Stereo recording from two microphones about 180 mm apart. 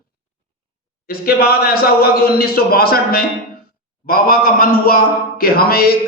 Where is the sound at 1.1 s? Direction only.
55° left (ahead or behind).